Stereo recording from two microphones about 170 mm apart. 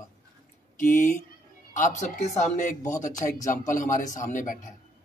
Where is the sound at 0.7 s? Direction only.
50° left (ahead or behind).